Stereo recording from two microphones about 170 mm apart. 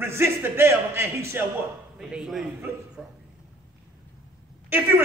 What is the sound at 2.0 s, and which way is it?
Speech, centre (ahead or behind).